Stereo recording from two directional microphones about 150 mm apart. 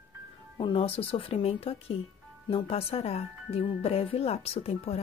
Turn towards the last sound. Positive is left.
turn(degrees=40)  # may be behind; listen again after turning